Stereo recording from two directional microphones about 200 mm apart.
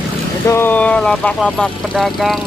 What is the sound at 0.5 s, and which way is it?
Speech, 10° left (ahead or behind).